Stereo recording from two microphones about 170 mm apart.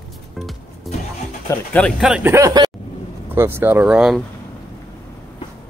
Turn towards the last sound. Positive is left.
turn(degrees=-5)  # may be behind; listen again after turning